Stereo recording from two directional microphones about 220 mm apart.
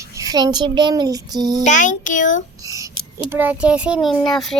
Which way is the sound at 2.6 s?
15° right (ahead or behind).